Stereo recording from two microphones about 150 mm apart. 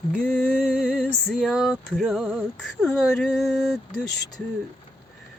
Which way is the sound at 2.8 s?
Centre (ahead or behind).